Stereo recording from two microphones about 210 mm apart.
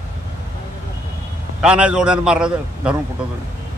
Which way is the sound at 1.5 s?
5° right (ahead or behind).